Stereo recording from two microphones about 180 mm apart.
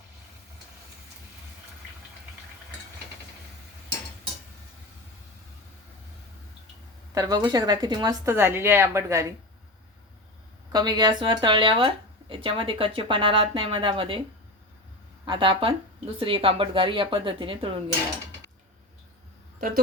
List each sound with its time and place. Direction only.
7.1 s speech: 20° right (ahead or behind)
10.7 s speech: 20° right (ahead or behind)
15.2 s speech: 25° right (ahead or behind)
19.5 s speech: 50° right (ahead or behind)